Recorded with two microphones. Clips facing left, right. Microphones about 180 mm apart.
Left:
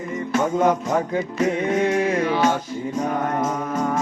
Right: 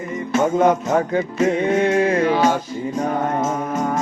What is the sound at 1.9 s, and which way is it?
Music, 60° right (ahead or behind).